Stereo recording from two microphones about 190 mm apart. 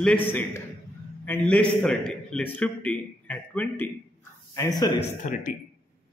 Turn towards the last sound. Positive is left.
turn(degrees=40)  # may be behind; listen again after turning